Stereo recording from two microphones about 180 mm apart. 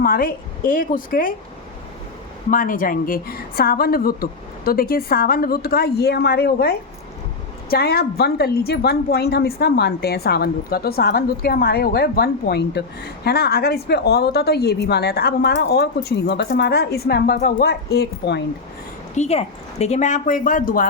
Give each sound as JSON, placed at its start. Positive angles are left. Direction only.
{"t": 0.0, "sound": "speech", "side_deg": 55}
{"t": 2.5, "sound": "a woman's voice", "side_deg": 50}
{"t": 19.1, "sound": "speech", "side_deg": 35}